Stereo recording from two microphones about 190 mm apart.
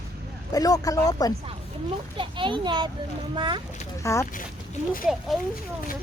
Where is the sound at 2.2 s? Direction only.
25° right (ahead or behind).